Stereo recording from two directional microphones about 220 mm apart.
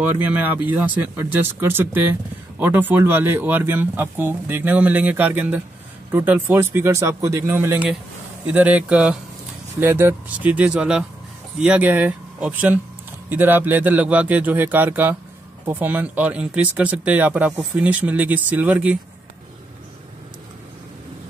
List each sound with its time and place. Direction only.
0.0 s speech: 5° right (ahead or behind)